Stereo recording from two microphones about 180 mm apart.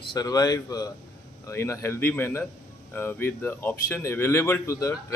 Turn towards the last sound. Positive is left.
turn(degrees=20)  # may be behind; listen again after turning